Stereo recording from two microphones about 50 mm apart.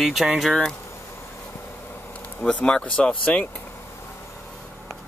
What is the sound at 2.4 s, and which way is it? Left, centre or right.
Speech, centre.